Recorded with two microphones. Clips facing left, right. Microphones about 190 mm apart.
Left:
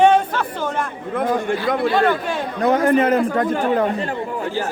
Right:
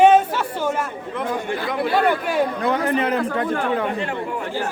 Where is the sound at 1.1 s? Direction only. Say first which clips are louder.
Left 5 dB; 50° left (ahead or behind).